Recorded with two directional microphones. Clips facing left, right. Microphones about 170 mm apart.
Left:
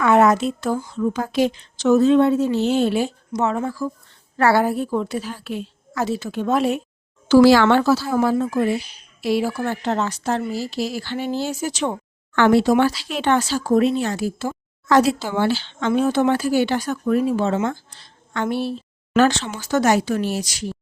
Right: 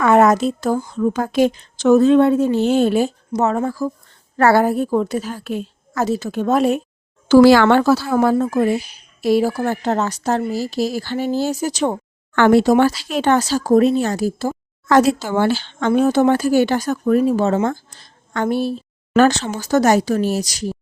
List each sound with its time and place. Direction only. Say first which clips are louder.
0.0 s speech: right 2 dB; 45° right (ahead or behind)